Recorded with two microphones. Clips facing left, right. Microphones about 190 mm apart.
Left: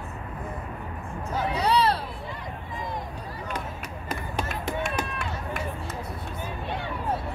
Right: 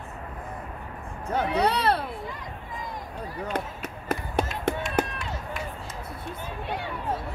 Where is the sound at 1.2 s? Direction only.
60° right (ahead or behind).